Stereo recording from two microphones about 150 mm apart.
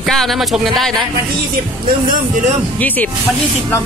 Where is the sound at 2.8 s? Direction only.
10° left (ahead or behind).